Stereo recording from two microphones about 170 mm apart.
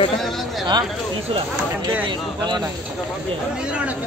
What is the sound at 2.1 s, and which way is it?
Speech, 25° right (ahead or behind).